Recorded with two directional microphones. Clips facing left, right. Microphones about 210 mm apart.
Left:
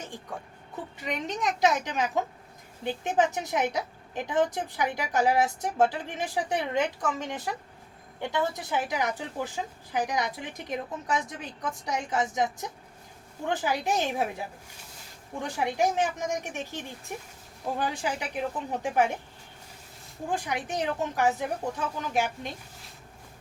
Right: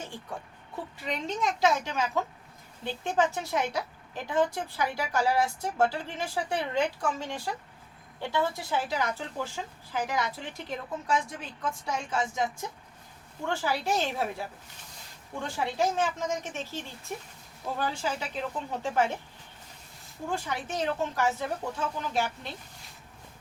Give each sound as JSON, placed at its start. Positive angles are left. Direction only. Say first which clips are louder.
{"t": 1.0, "sound": "a woman's voice", "louder": "even", "side_deg": 20}
{"t": 20.2, "sound": "speech", "louder": "left 2 dB", "side_deg": 15}